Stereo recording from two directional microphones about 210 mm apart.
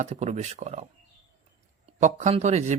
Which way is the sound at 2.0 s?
35° right (ahead or behind).